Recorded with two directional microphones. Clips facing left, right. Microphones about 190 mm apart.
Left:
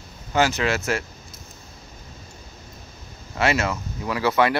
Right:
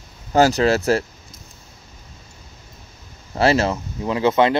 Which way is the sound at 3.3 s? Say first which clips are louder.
Right 5 dB; 35° right (ahead or behind).